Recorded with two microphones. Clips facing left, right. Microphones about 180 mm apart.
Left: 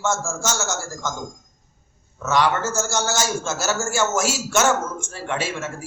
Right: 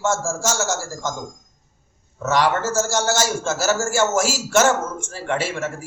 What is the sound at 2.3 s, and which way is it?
A man's voice, 5° right (ahead or behind).